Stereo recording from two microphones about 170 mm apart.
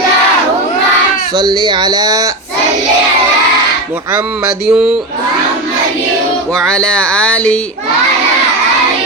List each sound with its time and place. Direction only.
1.4 s speech: 25° right (ahead or behind)
4.6 s speech: 5° right (ahead or behind)
6.5 s speech: 5° left (ahead or behind)